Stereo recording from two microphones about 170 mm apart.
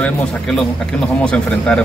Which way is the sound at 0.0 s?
5° left (ahead or behind).